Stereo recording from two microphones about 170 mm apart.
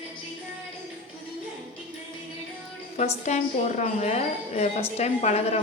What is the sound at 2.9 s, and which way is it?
A woman's voice, 40° left (ahead or behind).